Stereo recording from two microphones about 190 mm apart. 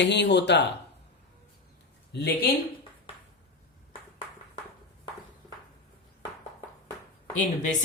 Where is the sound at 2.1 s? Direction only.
60° left (ahead or behind).